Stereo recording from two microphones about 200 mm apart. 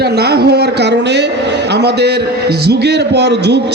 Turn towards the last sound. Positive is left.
turn(degrees=-55)  # may be behind; listen again after turning